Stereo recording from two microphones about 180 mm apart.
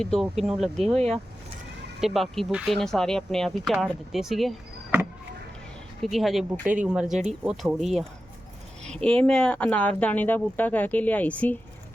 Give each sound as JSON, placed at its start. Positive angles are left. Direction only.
{"t": 0.0, "sound": "speech", "side_deg": 0}
{"t": 0.9, "sound": "speech", "side_deg": -35}
{"t": 2.0, "sound": "speech", "side_deg": 0}
{"t": 6.0, "sound": "speech", "side_deg": 0}